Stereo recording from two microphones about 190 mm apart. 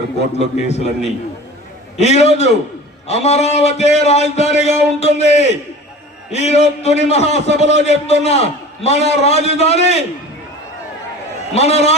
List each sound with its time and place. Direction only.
0.3 s a man's voice: 35° left (ahead or behind)
2.0 s a man's voice: 35° left (ahead or behind)
11.5 s a man's voice: 35° left (ahead or behind)